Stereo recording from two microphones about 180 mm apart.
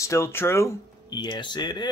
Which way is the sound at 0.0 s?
15° left (ahead or behind).